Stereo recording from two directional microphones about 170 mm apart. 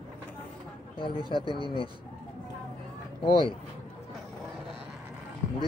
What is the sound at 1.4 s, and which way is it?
Speech, 25° right (ahead or behind).